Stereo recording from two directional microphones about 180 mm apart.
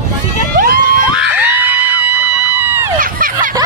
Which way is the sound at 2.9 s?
50° right (ahead or behind).